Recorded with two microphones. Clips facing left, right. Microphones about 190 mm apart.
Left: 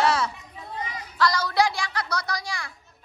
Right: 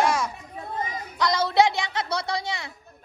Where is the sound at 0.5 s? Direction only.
45° right (ahead or behind).